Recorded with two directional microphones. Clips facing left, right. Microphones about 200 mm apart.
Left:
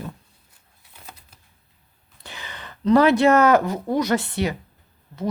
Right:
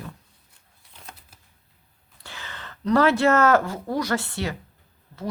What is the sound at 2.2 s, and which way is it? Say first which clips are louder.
Speech: left 2 dB; 15° left (ahead or behind).